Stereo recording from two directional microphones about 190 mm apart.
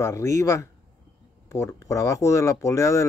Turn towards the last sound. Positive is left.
turn(degrees=15)  # may be behind; listen again after turning